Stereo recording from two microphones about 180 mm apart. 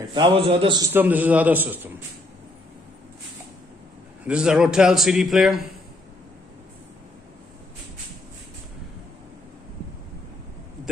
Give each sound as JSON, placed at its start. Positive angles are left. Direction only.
{"t": 0.1, "sound": "a man's voice", "side_deg": -25}
{"t": 0.9, "sound": "a man's voice", "side_deg": -10}
{"t": 4.2, "sound": "a man's voice", "side_deg": -5}